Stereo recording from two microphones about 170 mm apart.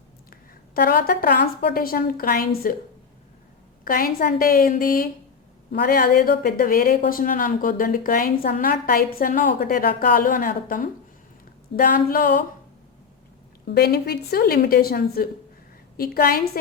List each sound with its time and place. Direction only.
0.3 s a woman's voice: 60° left (ahead or behind)
3.8 s a woman's voice: 55° left (ahead or behind)
13.7 s a woman's voice: 70° left (ahead or behind)